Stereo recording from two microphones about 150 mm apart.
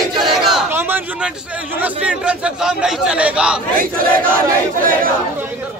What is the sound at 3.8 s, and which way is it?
Battle cry, 70° right (ahead or behind).